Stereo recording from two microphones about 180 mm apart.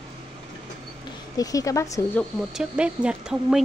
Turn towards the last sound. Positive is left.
turn(degrees=-5)  # may be behind; listen again after turning